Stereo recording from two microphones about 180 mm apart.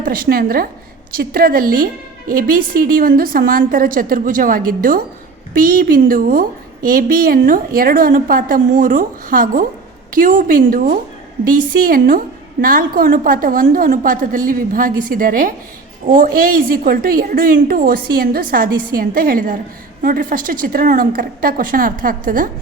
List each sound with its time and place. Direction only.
0.0 s a woman's voice: 55° right (ahead or behind)